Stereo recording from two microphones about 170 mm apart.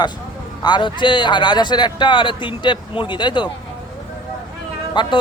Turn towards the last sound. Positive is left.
turn(degrees=25)  # may be behind; listen again after turning